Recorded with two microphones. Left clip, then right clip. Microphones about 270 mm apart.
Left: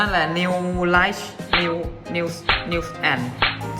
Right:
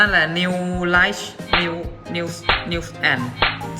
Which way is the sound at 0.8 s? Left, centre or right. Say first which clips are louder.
Right 2 dB; right.